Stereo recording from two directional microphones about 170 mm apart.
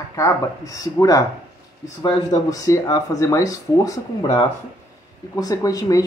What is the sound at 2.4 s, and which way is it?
Speech, 20° left (ahead or behind).